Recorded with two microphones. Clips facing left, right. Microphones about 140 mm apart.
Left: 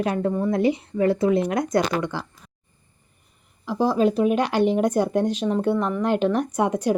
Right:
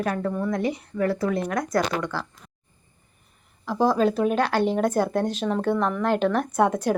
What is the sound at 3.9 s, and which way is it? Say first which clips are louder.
Speech: left 2 dB; 10° left (ahead or behind).